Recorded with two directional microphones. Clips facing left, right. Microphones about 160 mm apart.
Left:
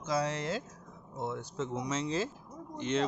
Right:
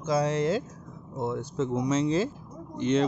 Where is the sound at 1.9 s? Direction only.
20° right (ahead or behind).